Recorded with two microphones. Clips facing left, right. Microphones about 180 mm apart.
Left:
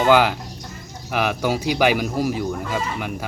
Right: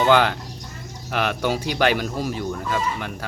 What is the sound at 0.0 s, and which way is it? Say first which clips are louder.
Speech: left 1 dB; 5° left (ahead or behind).